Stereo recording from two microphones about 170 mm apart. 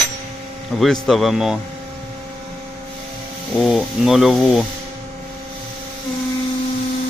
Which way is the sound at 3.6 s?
Centre (ahead or behind).